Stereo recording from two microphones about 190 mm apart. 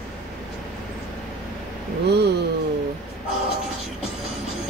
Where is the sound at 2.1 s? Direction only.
60° right (ahead or behind).